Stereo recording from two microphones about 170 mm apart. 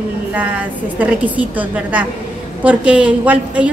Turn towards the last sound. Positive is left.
turn(degrees=-10)  # may be behind; listen again after turning